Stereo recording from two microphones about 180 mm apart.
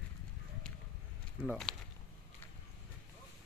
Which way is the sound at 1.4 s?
Centre (ahead or behind).